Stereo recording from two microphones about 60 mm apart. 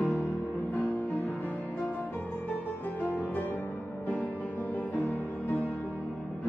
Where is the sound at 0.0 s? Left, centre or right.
Left.